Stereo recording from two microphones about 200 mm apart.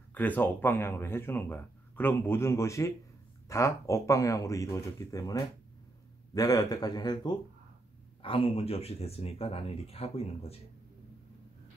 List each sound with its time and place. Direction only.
0.1 s speech: 10° left (ahead or behind); by 10.6 s 30° left (ahead or behind)